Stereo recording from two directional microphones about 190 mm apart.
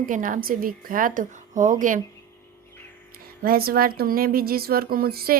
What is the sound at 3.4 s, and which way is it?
A woman's voice, 50° right (ahead or behind).